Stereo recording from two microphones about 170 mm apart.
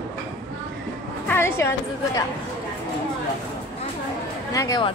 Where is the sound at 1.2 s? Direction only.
15° left (ahead or behind).